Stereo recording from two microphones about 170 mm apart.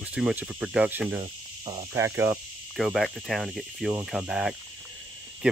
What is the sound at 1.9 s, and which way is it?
Speech, 15° right (ahead or behind).